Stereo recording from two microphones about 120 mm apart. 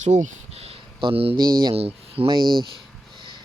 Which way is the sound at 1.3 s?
35° right (ahead or behind).